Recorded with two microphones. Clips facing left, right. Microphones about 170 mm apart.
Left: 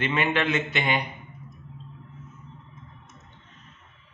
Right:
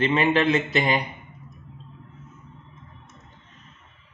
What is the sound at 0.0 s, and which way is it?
A man's voice, 35° right (ahead or behind).